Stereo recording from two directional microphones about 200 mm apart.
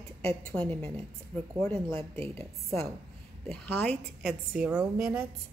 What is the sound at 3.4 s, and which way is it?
Speech, 5° left (ahead or behind).